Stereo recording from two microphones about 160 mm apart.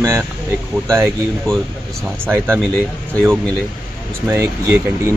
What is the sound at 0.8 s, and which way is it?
Speech, 20° right (ahead or behind).